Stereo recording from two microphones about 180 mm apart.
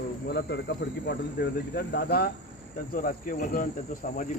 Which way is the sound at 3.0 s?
50° left (ahead or behind).